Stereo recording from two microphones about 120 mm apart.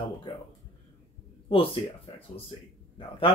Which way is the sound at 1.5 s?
45° left (ahead or behind).